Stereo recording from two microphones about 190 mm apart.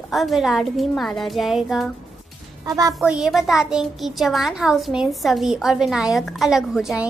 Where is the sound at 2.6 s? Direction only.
20° right (ahead or behind).